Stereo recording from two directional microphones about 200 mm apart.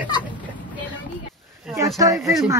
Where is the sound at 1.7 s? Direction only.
15° right (ahead or behind).